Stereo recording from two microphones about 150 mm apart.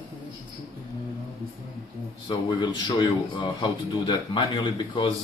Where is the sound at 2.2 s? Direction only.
30° left (ahead or behind).